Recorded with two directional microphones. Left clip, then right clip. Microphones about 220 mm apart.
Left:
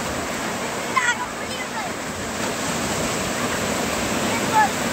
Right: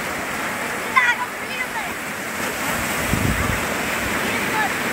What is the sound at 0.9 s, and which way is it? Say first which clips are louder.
Waterfall: right 4 dB; 45° left (ahead or behind).